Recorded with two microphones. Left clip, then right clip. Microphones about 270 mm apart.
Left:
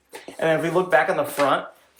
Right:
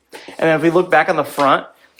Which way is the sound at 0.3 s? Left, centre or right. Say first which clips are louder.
Right 7 dB; right.